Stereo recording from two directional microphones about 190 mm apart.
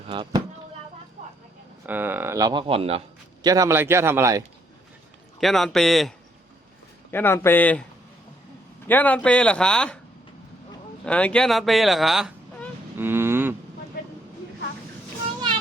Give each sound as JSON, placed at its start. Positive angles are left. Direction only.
{"t": 0.1, "sound": "speech", "side_deg": -25}
{"t": 1.9, "sound": "speech", "side_deg": -10}
{"t": 3.4, "sound": "speech", "side_deg": -20}
{"t": 5.4, "sound": "speech", "side_deg": 0}
{"t": 7.1, "sound": "speech", "side_deg": 10}
{"t": 8.9, "sound": "speech", "side_deg": 10}
{"t": 11.0, "sound": "speech", "side_deg": 5}
{"t": 13.0, "sound": "cattle", "side_deg": -10}